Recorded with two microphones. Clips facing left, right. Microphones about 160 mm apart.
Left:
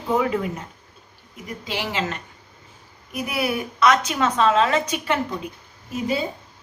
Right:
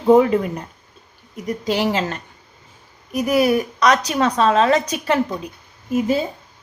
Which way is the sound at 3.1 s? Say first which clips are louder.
Right 8 dB; 40° right (ahead or behind).